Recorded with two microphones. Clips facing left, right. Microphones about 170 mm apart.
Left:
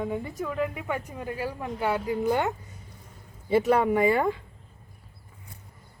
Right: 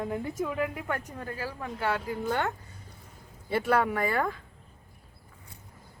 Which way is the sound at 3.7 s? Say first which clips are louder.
Left 3 dB; 5° left (ahead or behind).